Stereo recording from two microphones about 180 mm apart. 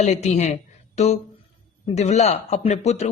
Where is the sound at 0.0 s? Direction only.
40° left (ahead or behind).